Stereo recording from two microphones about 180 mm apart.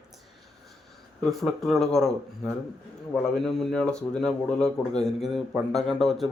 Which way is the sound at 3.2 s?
Centre (ahead or behind).